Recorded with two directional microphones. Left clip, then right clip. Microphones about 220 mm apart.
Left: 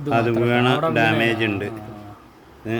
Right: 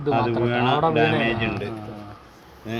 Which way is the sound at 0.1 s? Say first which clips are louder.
Left 2 dB; 55° left (ahead or behind).